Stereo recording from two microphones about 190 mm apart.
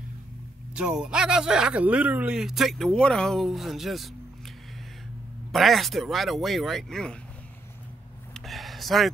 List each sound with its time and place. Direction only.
0.7 s speech: 5° right (ahead or behind)
5.5 s speech: centre (ahead or behind)
8.3 s a sound: centre (ahead or behind)